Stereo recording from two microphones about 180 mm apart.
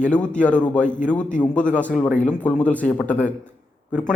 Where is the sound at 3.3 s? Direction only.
5° left (ahead or behind).